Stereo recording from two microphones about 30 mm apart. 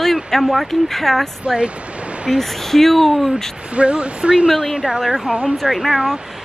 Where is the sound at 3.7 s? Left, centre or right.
Right.